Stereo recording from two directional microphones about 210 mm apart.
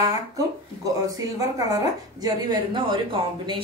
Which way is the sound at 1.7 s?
15° right (ahead or behind).